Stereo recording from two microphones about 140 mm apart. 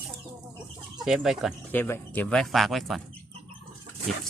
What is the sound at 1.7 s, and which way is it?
Speech, 15° left (ahead or behind).